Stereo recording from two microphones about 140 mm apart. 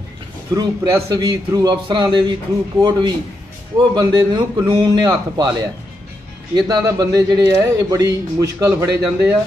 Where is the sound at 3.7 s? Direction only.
30° right (ahead or behind).